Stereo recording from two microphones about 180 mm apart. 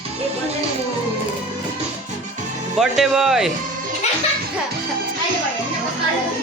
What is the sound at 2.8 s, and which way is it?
Speech, centre (ahead or behind).